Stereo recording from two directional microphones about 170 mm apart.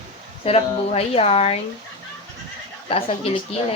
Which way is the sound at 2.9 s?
30° left (ahead or behind).